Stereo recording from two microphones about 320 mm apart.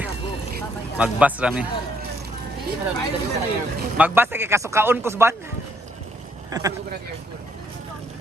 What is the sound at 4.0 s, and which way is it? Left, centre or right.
Speech, centre.